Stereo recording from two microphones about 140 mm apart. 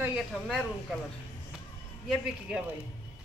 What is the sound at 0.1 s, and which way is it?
Speech, centre (ahead or behind).